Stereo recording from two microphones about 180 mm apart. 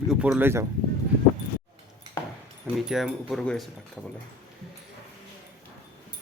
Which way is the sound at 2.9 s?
Centre (ahead or behind).